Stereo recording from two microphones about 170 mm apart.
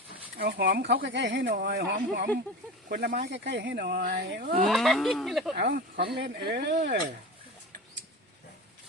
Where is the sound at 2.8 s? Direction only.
70° right (ahead or behind).